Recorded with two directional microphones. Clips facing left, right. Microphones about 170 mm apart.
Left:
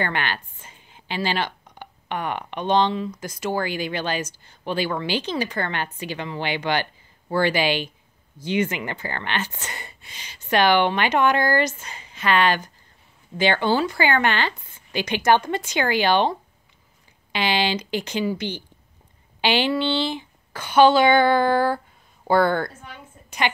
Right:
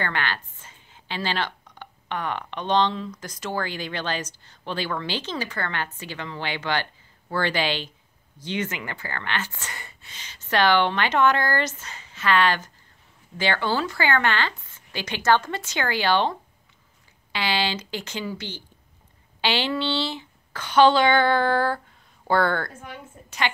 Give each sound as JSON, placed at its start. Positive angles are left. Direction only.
{"t": 0.0, "sound": "a woman's voice", "side_deg": 15}